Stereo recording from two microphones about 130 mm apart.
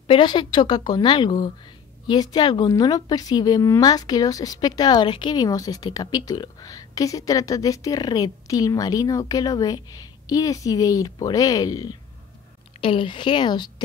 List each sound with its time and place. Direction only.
0.0 s a woman's voice: 40° left (ahead or behind)
12.8 s speech: 40° left (ahead or behind)